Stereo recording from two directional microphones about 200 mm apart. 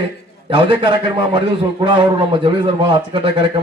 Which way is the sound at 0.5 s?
25° right (ahead or behind).